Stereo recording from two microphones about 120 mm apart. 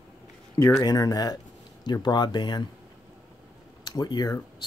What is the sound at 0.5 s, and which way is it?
Speech, 30° left (ahead or behind).